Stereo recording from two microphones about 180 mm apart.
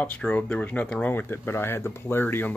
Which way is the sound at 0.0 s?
10° left (ahead or behind).